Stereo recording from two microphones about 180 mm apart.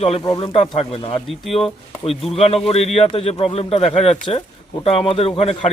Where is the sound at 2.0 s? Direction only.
35° left (ahead or behind).